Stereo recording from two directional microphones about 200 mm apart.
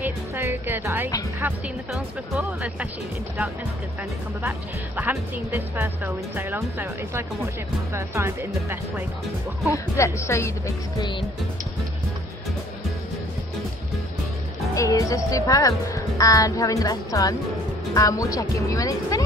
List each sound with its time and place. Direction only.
0.0 s speech: 10° right (ahead or behind)
4.4 s speech: 10° right (ahead or behind)
9.7 s speech: 15° left (ahead or behind)
14.8 s speech: 15° left (ahead or behind)